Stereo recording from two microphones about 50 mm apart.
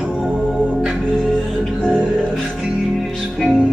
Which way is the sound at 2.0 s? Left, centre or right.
Centre.